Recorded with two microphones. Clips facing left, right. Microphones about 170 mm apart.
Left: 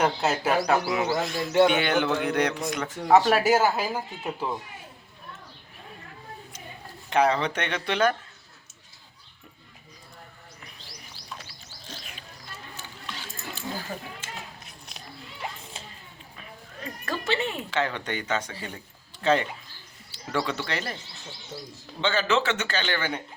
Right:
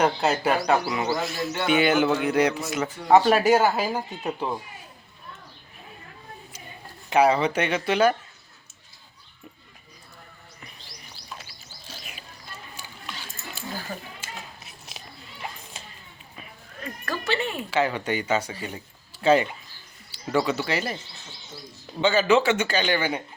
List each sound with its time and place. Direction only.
0.0 s speech: centre (ahead or behind)
7.1 s a man's voice: 10° right (ahead or behind)
11.9 s a sound: 10° right (ahead or behind)
14.2 s a sound: 5° right (ahead or behind)
17.1 s speech: 20° left (ahead or behind)
17.6 s a man's voice: 10° right (ahead or behind)
22.0 s a man's voice: 10° right (ahead or behind)